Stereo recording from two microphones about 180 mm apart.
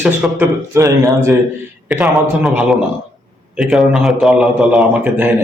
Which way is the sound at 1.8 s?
5° right (ahead or behind).